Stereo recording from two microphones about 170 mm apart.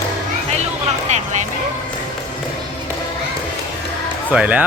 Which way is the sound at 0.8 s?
45° right (ahead or behind).